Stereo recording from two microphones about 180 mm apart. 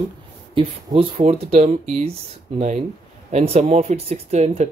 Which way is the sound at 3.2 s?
40° right (ahead or behind).